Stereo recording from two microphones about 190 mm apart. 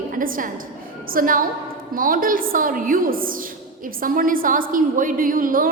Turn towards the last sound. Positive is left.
turn(degrees=-45)  # may be behind; listen again after turning